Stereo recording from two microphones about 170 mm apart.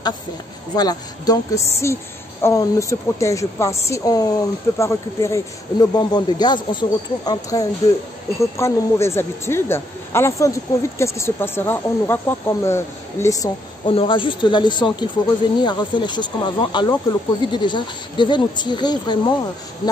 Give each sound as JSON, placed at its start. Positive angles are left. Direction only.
{"t": 0.7, "sound": "a woman's voice", "side_deg": 20}
{"t": 13.8, "sound": "a woman's voice", "side_deg": 30}